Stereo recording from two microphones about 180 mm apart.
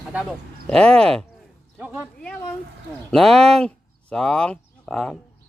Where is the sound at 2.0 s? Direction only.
5° left (ahead or behind).